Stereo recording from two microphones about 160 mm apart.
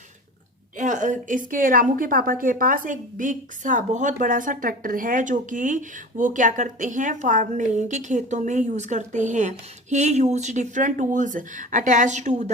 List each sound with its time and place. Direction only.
0.8 s a woman's voice: 50° right (ahead or behind)